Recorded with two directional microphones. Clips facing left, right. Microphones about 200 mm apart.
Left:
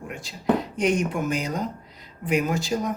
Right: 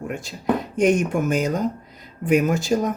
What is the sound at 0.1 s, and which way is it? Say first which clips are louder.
Speech: even; 50° right (ahead or behind).